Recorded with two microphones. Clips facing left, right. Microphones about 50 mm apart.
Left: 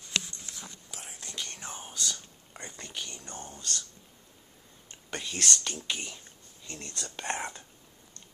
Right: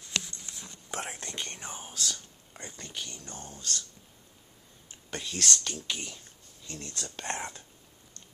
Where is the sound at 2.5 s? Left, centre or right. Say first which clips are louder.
Left 1 dB; centre.